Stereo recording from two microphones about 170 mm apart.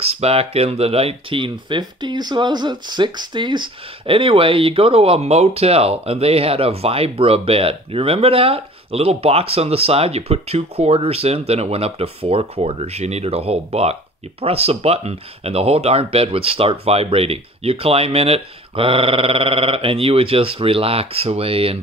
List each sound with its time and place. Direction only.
0.0 s speech: 35° right (ahead or behind)